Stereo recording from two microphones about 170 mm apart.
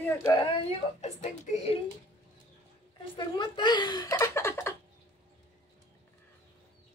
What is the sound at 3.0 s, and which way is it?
Speech, 25° left (ahead or behind).